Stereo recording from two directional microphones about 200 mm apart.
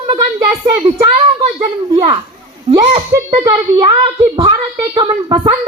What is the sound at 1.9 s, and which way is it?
Children playing, 25° right (ahead or behind).